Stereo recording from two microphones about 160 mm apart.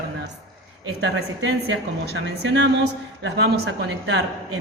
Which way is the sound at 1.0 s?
90° right.